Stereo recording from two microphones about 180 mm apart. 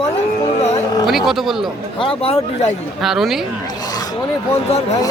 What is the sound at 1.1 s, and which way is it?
Speech, centre (ahead or behind).